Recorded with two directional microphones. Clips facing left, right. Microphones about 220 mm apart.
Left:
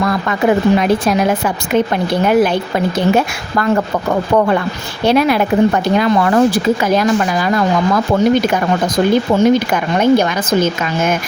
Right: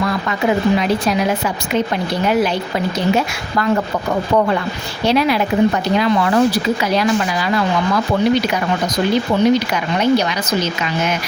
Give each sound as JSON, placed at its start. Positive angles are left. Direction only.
{"t": 0.3, "sound": "speech", "side_deg": 50}
{"t": 5.0, "sound": "speech", "side_deg": 50}